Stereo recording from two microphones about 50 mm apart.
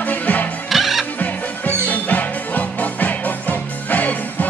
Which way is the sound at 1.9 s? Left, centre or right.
Left.